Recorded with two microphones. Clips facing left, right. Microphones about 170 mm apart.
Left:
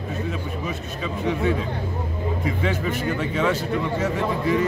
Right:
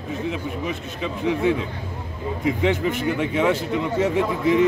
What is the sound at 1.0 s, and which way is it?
Speech, 15° right (ahead or behind).